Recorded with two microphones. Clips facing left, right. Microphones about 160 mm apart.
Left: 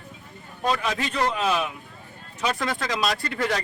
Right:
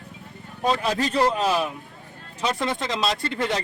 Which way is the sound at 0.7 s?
35° right (ahead or behind).